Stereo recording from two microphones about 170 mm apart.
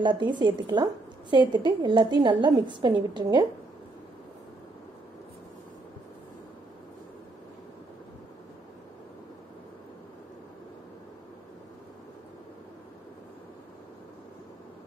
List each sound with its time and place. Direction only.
0.0 s a woman's voice: 25° right (ahead or behind)